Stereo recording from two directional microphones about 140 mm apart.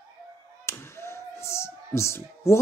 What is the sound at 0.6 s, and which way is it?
Speech, 20° left (ahead or behind).